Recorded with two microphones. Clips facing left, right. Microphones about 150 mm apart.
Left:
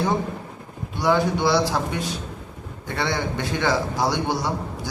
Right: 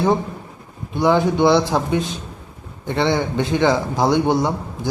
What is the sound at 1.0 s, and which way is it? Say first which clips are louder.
A man's voice: right 5 dB; 20° right (ahead or behind).